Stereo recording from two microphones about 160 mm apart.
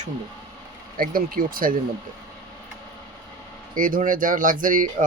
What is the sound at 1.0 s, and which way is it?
Speech, 60° right (ahead or behind).